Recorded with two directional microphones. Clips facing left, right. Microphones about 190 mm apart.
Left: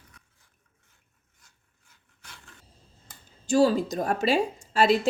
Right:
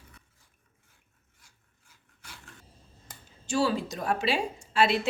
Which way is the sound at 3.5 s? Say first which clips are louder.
Left 6 dB; 40° left (ahead or behind).